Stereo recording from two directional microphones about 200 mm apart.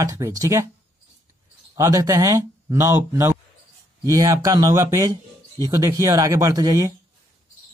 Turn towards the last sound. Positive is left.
turn(degrees=-15)  # may be behind; listen again after turning